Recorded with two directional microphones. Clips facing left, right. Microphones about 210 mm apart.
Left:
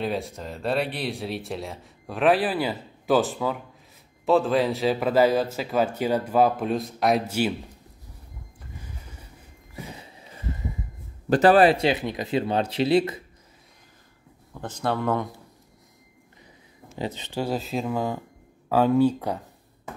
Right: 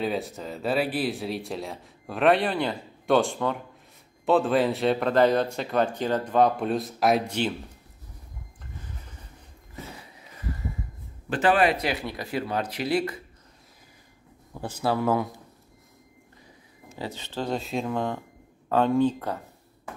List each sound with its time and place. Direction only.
0.0 s speech: centre (ahead or behind)
10.3 s a sound: 20° left (ahead or behind)
11.2 s speech: 40° left (ahead or behind); by 13.2 s 20° left (ahead or behind)
14.5 s a man's voice: 10° right (ahead or behind)
17.0 s speech: 20° left (ahead or behind)